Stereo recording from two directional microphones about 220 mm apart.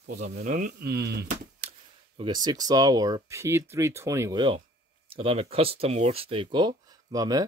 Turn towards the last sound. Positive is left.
turn(degrees=-15)  # may be behind; listen again after turning